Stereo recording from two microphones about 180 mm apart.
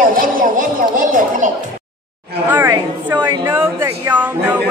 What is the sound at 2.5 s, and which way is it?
A woman's voice, 10° right (ahead or behind).